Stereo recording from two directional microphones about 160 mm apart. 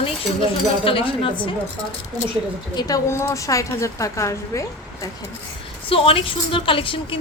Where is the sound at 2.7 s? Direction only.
20° left (ahead or behind).